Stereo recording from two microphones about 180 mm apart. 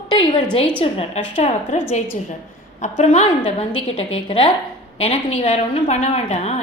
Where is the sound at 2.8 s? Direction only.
40° left (ahead or behind).